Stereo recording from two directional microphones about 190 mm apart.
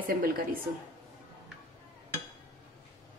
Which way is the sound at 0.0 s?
50° right (ahead or behind).